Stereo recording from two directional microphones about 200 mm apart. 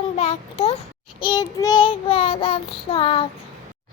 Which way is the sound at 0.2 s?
30° left (ahead or behind).